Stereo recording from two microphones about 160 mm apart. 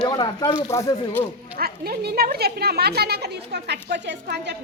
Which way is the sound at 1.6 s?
70° right (ahead or behind).